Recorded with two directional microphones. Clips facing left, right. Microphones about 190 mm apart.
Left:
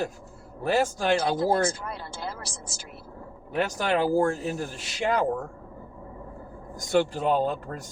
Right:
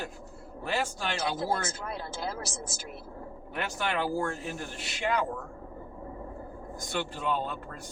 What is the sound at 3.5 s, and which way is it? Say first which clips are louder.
Speech: left 7 dB; 40° left (ahead or behind).